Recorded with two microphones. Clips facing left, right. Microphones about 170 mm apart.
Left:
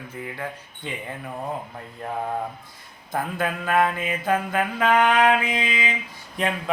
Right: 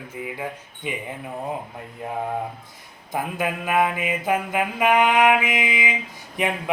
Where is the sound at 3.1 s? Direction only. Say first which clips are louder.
Even; 15° right (ahead or behind).